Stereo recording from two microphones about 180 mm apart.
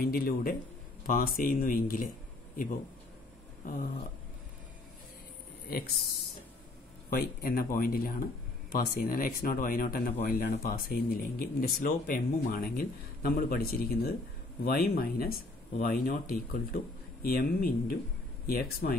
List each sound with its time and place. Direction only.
0.0 s speech: 60° left (ahead or behind)
7.1 s speech: 55° left (ahead or behind)